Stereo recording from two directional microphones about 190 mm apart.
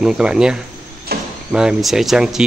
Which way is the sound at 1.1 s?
55° right (ahead or behind).